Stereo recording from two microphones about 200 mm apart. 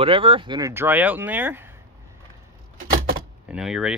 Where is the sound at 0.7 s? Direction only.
10° right (ahead or behind).